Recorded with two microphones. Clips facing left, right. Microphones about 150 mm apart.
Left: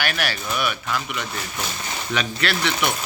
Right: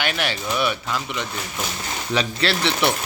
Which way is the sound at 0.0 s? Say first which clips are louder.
Right 1 dB; 25° right (ahead or behind).